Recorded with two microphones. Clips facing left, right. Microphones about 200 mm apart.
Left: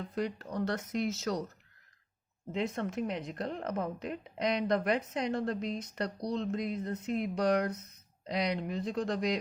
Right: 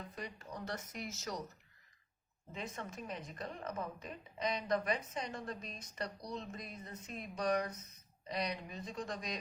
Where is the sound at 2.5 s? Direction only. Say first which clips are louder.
Left 11 dB; 70° left (ahead or behind).